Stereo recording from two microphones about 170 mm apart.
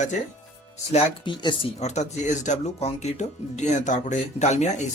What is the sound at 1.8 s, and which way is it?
Speech, 40° left (ahead or behind).